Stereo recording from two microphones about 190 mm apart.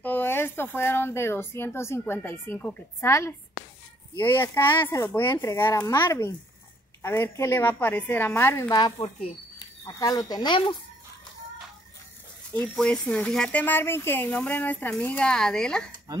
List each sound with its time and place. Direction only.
0.0 s speech: 10° left (ahead or behind)
12.5 s speech: 5° left (ahead or behind)